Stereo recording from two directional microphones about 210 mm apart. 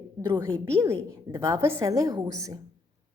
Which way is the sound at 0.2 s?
20° right (ahead or behind).